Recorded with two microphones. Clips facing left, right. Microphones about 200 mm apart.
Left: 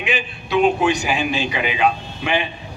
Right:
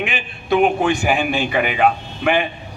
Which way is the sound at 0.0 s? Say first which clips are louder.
Left 1 dB; 50° right (ahead or behind).